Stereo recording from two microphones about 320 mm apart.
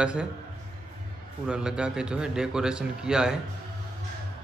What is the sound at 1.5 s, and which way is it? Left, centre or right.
A man's voice, centre.